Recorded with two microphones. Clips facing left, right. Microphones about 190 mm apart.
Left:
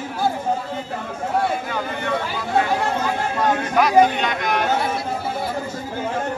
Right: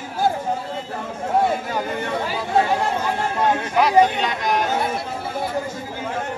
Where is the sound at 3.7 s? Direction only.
30° right (ahead or behind).